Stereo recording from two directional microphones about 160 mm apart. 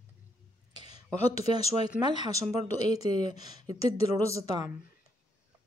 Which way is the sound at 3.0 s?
45° left (ahead or behind).